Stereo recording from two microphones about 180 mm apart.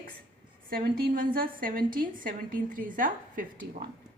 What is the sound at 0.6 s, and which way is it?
A woman's voice, 55° right (ahead or behind).